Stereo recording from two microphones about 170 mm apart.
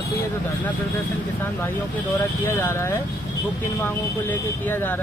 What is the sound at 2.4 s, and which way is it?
Speech, 15° left (ahead or behind).